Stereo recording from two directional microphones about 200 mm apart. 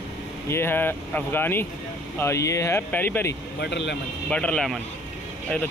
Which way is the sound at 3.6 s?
60° left (ahead or behind).